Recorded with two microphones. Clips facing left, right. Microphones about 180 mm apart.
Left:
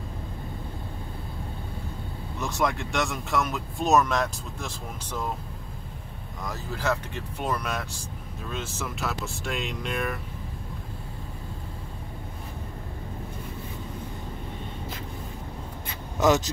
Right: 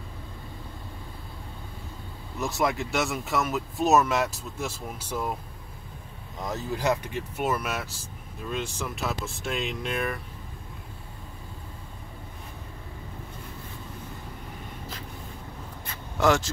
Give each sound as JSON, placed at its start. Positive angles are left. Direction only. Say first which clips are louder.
{"t": 2.4, "sound": "speech", "louder": "right 1 dB", "side_deg": -5}
{"t": 6.4, "sound": "speech", "louder": "right 3 dB", "side_deg": -20}
{"t": 7.3, "sound": "speech", "louder": "right 1 dB", "side_deg": -5}
{"t": 16.2, "sound": "speech", "louder": "left 1 dB", "side_deg": 20}